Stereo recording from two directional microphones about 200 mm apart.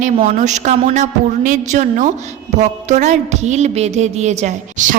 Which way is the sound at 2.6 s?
35° right (ahead or behind).